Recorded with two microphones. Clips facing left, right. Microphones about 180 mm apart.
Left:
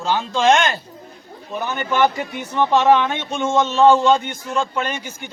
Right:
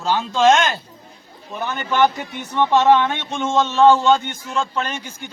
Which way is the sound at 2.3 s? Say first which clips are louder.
Right 1 dB; 10° left (ahead or behind).